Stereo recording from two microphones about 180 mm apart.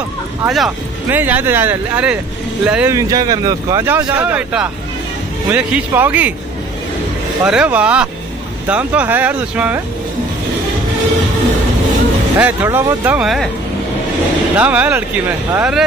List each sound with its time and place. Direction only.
0.5 s speech: 5° right (ahead or behind)
7.4 s speech: 5° right (ahead or behind)
12.4 s speech: 10° right (ahead or behind)
14.6 s speech: 10° right (ahead or behind)